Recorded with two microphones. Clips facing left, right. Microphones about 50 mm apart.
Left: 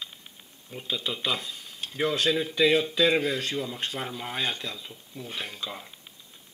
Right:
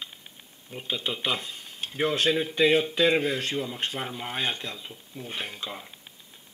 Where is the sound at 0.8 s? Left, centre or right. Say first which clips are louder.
Right 1 dB; right.